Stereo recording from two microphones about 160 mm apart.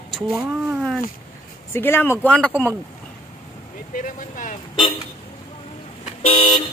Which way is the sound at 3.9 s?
55° left (ahead or behind).